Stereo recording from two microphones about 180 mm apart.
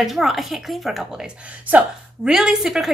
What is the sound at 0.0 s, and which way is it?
A woman's voice, centre (ahead or behind).